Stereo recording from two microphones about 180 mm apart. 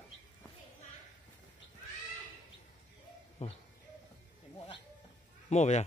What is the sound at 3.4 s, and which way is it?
Speech, 35° left (ahead or behind).